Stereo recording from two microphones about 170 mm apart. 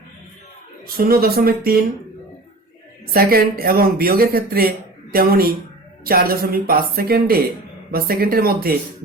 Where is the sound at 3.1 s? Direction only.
60° right (ahead or behind).